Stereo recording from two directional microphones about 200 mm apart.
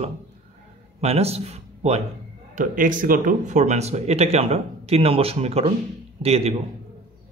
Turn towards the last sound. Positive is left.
turn(degrees=-30)  # may be behind; listen again after turning